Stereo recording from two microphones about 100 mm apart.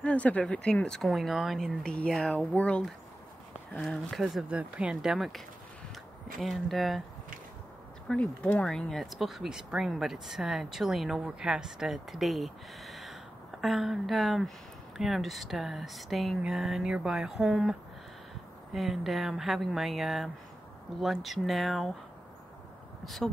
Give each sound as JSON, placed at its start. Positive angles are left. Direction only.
{"t": 0.0, "sound": "speech", "side_deg": 15}
{"t": 4.5, "sound": "speech", "side_deg": -10}
{"t": 6.4, "sound": "speech", "side_deg": 0}
{"t": 8.1, "sound": "speech", "side_deg": 10}
{"t": 23.0, "sound": "speech", "side_deg": 0}